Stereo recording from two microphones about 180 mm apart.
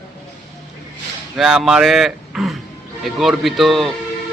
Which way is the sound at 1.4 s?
5° right (ahead or behind).